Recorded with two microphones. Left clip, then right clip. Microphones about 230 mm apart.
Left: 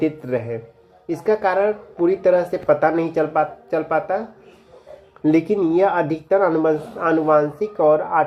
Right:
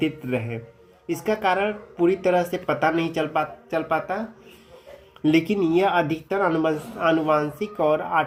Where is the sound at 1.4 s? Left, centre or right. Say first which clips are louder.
Left 4 dB; right.